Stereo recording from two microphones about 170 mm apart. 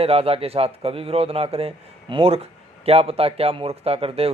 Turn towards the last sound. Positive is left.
turn(degrees=-35)  # may be behind; listen again after turning